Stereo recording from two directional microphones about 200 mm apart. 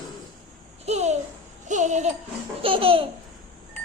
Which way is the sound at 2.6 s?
25° right (ahead or behind).